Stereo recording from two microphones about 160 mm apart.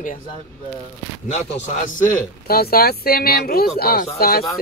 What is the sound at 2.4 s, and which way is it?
Speech, 70° left (ahead or behind).